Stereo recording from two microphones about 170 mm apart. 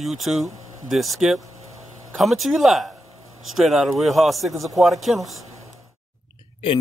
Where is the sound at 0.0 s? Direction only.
Centre (ahead or behind).